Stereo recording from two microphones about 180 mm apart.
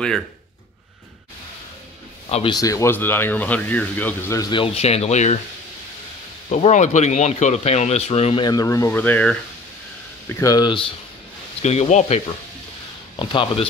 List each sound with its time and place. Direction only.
2.2 s a man's voice: 30° left (ahead or behind)
2.6 s speech: 15° left (ahead or behind); by 5.4 s 40° left (ahead or behind)
6.5 s speech: 40° left (ahead or behind); by 9.4 s 10° left (ahead or behind)
10.2 s speech: 20° left (ahead or behind)
11.6 s speech: 40° left (ahead or behind)
13.1 s speech: 25° left (ahead or behind)